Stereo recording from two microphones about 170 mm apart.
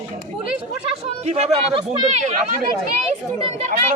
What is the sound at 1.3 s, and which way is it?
Speech, 40° right (ahead or behind).